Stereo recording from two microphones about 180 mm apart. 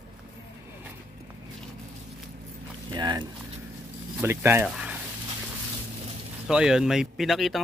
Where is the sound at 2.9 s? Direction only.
25° right (ahead or behind).